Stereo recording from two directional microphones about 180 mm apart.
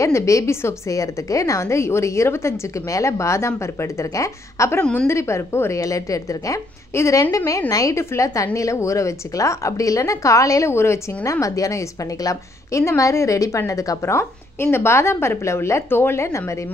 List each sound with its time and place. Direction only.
0.0 s a woman's voice: 15° left (ahead or behind)